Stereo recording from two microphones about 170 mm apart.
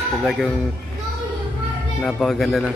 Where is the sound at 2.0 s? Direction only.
5° left (ahead or behind).